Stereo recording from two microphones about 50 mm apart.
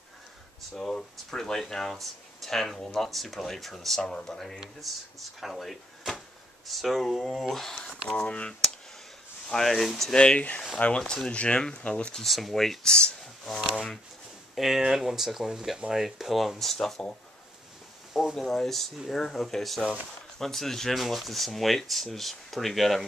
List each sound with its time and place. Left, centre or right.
0.7 s speech: centre
9.5 s speech: centre
10.1 s speech: left
11.2 s speech: left
12.2 s speech: centre
18.3 s speech: centre